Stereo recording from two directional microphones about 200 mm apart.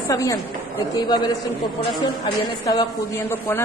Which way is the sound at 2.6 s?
15° left (ahead or behind).